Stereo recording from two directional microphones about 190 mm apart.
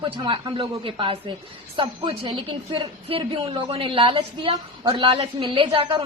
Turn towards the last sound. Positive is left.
turn(degrees=-25)  # may be behind; listen again after turning